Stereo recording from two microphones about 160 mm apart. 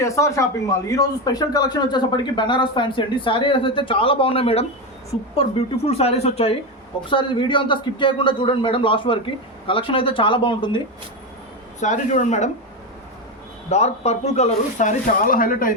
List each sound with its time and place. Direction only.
0.0 s speech: 20° left (ahead or behind)
11.8 s speech: 50° left (ahead or behind)
13.7 s speech: 45° left (ahead or behind); by 15.7 s 60° left (ahead or behind)